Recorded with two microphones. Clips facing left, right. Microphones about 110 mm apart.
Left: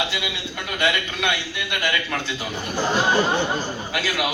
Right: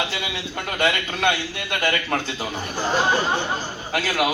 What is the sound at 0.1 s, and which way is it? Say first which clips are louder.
A man's voice: even; 40° right (ahead or behind).